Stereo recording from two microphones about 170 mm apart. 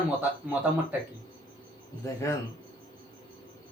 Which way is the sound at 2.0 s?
15° left (ahead or behind).